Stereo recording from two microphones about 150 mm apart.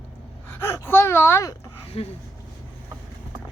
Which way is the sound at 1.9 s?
40° left (ahead or behind).